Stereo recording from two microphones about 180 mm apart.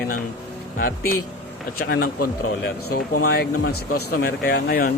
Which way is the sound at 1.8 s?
60° left (ahead or behind).